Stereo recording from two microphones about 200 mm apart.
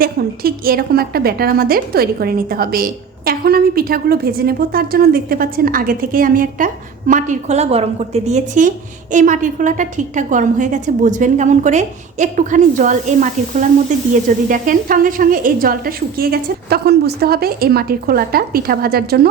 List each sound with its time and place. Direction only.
0.0 s a woman's voice: 45° right (ahead or behind)